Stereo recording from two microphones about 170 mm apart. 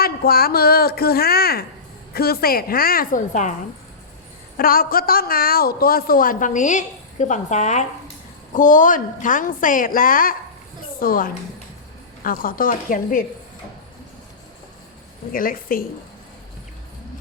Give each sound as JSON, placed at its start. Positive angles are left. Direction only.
{"t": 0.0, "sound": "a woman's voice", "side_deg": 60}
{"t": 4.5, "sound": "a woman's voice", "side_deg": 60}
{"t": 15.3, "sound": "a woman's voice", "side_deg": 55}